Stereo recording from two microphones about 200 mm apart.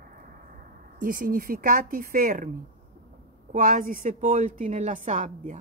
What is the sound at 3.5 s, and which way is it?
A woman's voice, 40° right (ahead or behind).